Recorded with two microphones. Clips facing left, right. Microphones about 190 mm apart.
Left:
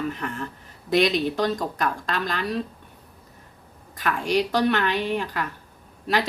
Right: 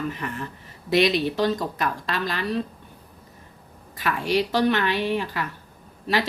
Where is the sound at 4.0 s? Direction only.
Centre (ahead or behind).